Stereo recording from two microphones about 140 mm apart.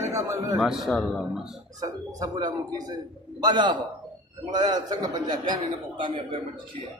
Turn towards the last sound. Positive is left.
turn(degrees=-35)  # may be behind; listen again after turning